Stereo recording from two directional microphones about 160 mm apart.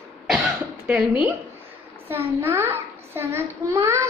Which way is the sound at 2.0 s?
15° right (ahead or behind).